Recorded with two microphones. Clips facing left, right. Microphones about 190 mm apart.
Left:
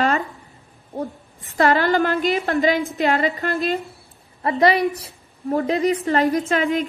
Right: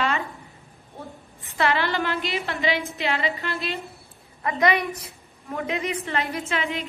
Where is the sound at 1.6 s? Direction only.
45° left (ahead or behind).